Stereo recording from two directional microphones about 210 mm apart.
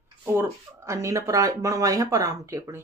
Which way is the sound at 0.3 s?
15° right (ahead or behind).